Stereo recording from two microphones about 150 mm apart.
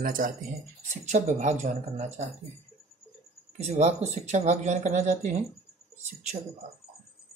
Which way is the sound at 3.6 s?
45° right (ahead or behind).